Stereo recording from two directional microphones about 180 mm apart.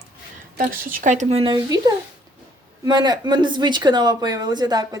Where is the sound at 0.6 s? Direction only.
45° right (ahead or behind); by 1.8 s 25° right (ahead or behind).